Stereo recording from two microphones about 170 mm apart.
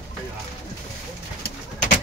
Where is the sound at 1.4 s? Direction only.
50° left (ahead or behind).